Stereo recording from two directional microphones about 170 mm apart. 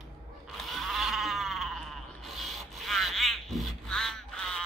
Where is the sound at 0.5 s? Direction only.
Centre (ahead or behind).